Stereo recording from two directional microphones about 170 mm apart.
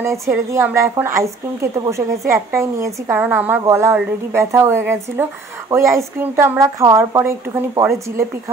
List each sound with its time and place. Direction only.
0.0 s a woman's voice: 15° right (ahead or behind)